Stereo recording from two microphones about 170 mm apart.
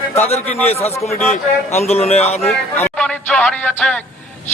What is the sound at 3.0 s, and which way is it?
Speech, 5° left (ahead or behind).